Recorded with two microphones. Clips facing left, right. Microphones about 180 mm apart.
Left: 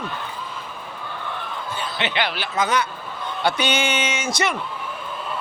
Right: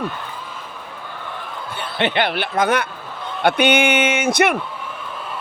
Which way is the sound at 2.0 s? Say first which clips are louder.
Right 7 dB; 55° right (ahead or behind).